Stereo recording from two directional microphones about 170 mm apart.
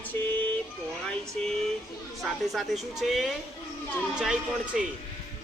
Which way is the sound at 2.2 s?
Centre (ahead or behind).